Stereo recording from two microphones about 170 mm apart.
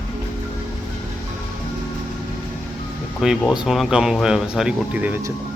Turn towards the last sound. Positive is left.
turn(degrees=-10)  # may be behind; listen again after turning